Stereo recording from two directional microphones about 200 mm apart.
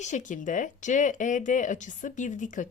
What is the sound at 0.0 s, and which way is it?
Speech, 40° left (ahead or behind).